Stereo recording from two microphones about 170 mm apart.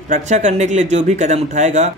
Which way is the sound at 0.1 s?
45° right (ahead or behind).